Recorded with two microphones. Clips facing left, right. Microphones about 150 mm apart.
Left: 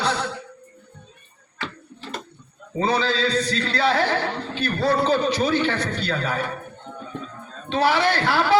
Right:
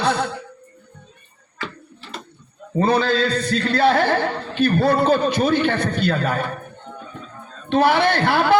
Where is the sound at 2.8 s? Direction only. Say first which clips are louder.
Right 4 dB; 55° right (ahead or behind).